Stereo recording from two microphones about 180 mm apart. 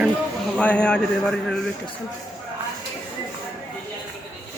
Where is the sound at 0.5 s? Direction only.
5° left (ahead or behind).